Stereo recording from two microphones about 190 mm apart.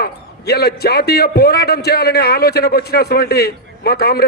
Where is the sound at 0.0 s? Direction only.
55° left (ahead or behind).